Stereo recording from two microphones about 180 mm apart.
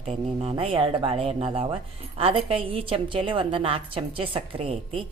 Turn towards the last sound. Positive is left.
turn(degrees=-35)  # may be behind; listen again after turning